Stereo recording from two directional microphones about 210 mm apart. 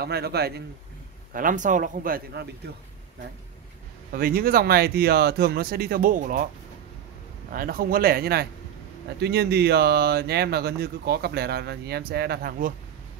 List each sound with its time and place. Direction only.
0.0 s speech: 50° right (ahead or behind)
1.3 s a man's voice: 40° right (ahead or behind)
4.1 s speech: 45° right (ahead or behind)
7.5 s speech: 45° right (ahead or behind)